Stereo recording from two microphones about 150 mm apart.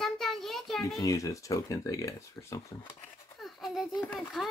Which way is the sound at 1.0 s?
20° left (ahead or behind).